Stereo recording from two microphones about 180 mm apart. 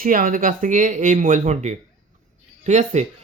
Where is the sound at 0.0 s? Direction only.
50° right (ahead or behind).